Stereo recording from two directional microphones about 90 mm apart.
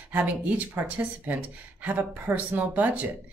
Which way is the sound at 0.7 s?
20° right (ahead or behind).